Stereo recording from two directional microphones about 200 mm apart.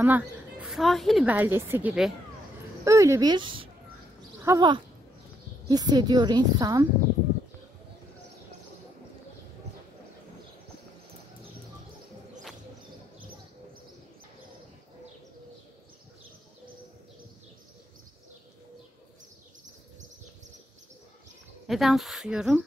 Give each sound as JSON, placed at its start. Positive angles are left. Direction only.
{"t": 0.0, "sound": "a woman's voice", "side_deg": -10}
{"t": 21.6, "sound": "speech", "side_deg": 0}